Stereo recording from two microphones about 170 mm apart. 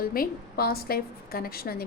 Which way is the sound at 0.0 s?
60° left (ahead or behind).